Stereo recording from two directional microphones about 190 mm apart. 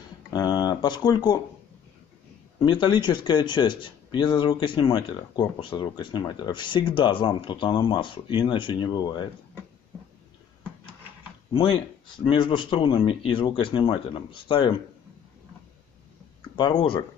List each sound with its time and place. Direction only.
0.3 s speech: 20° left (ahead or behind)
2.6 s speech: 25° left (ahead or behind)
12.3 s speech: 25° left (ahead or behind)
16.5 s speech: 25° left (ahead or behind)